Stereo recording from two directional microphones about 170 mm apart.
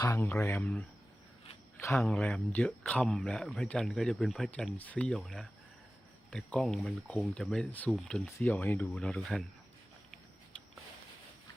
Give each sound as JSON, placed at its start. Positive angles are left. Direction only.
{"t": 0.0, "sound": "speech", "side_deg": 15}
{"t": 0.6, "sound": "speech", "side_deg": 5}
{"t": 2.0, "sound": "speech", "side_deg": 5}